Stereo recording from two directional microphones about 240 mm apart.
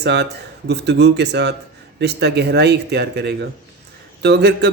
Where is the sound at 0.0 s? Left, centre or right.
Right.